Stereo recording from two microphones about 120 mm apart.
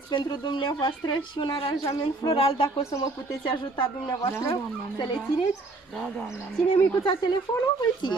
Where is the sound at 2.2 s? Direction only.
50° left (ahead or behind).